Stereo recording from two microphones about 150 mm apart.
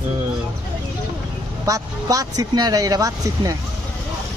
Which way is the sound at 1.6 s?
20° right (ahead or behind).